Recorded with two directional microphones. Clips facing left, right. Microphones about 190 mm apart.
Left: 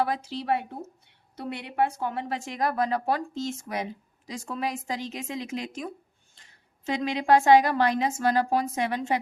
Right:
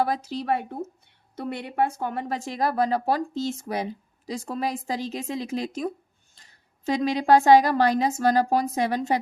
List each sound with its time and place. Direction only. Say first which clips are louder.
0.0 s a woman's voice: right 2 dB; 40° right (ahead or behind)